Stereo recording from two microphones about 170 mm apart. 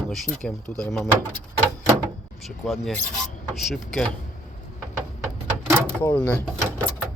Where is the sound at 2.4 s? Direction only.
Centre (ahead or behind).